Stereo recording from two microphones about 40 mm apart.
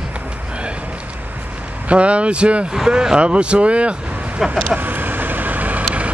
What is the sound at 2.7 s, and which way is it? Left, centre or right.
Speech, centre.